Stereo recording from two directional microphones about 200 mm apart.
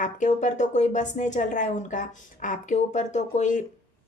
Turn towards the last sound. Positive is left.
turn(degrees=40)  # may be behind; listen again after turning